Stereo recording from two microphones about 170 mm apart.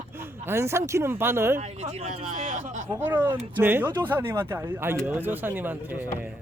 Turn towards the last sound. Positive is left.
turn(degrees=-10)  # may be behind; listen again after turning